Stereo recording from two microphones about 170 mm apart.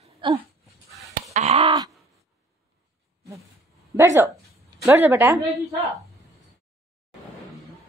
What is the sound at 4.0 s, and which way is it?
Speech, 15° right (ahead or behind).